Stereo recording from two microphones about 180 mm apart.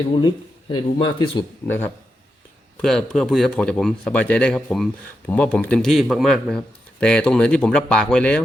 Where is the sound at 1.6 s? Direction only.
10° left (ahead or behind).